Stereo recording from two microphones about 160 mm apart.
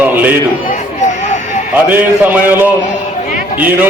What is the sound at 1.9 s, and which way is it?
A man's voice, 10° right (ahead or behind).